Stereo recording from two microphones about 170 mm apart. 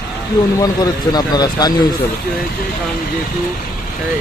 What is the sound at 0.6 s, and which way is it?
Speech, 25° left (ahead or behind).